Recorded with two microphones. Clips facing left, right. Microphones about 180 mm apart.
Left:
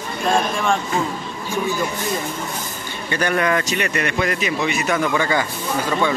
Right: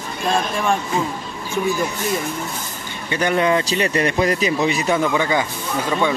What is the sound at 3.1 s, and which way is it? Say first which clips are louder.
Speech: right 2 dB; 20° right (ahead or behind).